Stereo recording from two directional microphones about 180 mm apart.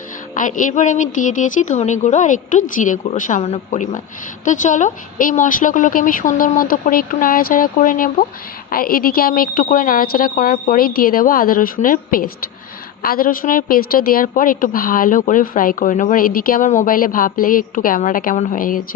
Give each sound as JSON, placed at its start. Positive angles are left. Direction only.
{"t": 0.3, "sound": "a woman's voice", "side_deg": 45}